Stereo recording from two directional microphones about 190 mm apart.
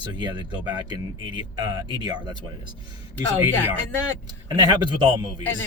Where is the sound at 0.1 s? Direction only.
25° right (ahead or behind).